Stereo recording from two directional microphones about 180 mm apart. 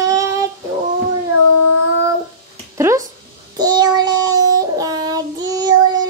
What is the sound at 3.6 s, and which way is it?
Child singing, 25° right (ahead or behind).